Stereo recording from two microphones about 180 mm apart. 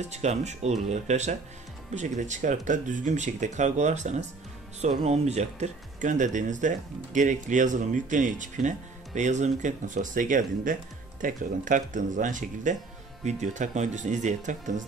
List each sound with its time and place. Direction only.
0.1 s speech: 40° right (ahead or behind)